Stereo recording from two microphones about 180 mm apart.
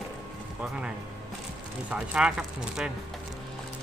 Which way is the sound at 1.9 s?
5° right (ahead or behind).